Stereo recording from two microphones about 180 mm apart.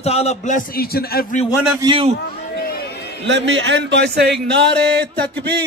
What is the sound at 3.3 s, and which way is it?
A man's voice, 85° right.